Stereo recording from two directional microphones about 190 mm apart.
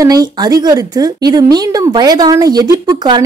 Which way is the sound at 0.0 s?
20° right (ahead or behind).